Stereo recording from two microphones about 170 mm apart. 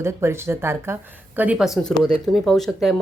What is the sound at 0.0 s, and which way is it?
Speech, 15° right (ahead or behind).